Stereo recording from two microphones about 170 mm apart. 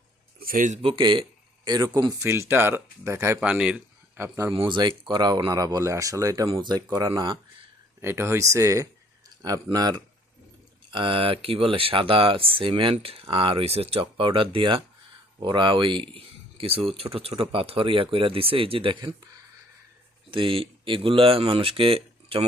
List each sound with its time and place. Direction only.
0.3 s speech: 55° right (ahead or behind)
0.8 s speech: 30° right (ahead or behind); by 4.3 s 5° right (ahead or behind)
4.6 s speech: 25° right (ahead or behind)
8.0 s speech: 15° right (ahead or behind)
20.3 s speech: 30° right (ahead or behind)